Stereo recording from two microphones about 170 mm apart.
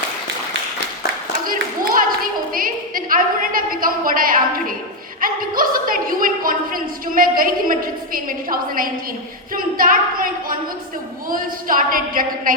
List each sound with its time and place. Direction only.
1.5 s a sound: 55° right (ahead or behind)
5.2 s a woman's voice: 55° right (ahead or behind)
11.3 s a woman's voice: 55° right (ahead or behind)